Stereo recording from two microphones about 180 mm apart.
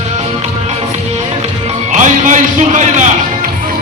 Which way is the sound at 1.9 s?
45° right (ahead or behind).